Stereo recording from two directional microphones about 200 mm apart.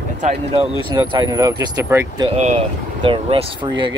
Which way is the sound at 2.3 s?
35° right (ahead or behind).